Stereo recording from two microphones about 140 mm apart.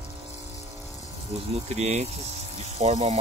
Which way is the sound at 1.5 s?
50° right (ahead or behind).